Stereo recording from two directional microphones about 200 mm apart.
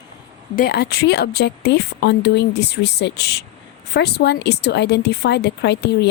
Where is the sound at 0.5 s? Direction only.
50° left (ahead or behind).